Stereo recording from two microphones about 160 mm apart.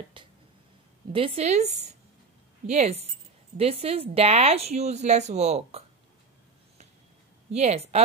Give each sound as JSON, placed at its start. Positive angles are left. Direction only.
{"t": 0.2, "sound": "a sound", "side_deg": -30}
{"t": 1.1, "sound": "a woman's voice", "side_deg": -35}
{"t": 7.5, "sound": "speech", "side_deg": -40}